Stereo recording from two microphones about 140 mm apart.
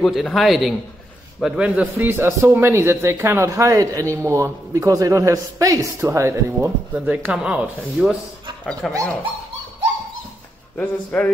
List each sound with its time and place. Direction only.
0.0 s a man's voice: centre (ahead or behind)
8.8 s a man's voice: 5° left (ahead or behind)
10.8 s speech: 10° left (ahead or behind)